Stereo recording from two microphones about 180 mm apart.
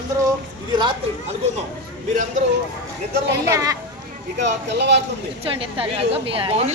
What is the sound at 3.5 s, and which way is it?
Speech, 20° right (ahead or behind).